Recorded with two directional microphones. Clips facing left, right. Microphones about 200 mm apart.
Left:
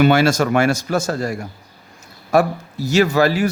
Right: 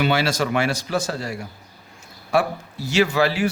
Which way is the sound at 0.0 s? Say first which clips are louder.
Left 7 dB; 50° left (ahead or behind).